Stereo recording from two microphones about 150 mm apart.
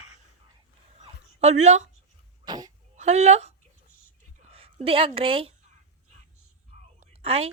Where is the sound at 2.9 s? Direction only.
50° right (ahead or behind).